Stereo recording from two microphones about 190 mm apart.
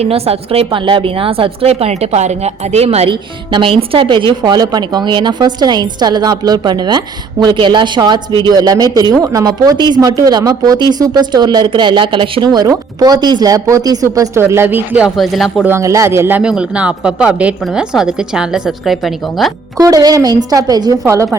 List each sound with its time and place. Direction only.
0.0 s a woman's voice: 30° right (ahead or behind); by 15.7 s centre (ahead or behind)
15.7 s speech: 15° right (ahead or behind); by 19.5 s centre (ahead or behind)
19.7 s speech: 20° right (ahead or behind)